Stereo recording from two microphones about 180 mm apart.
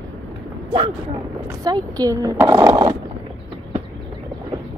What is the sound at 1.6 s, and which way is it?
Speech, 20° right (ahead or behind).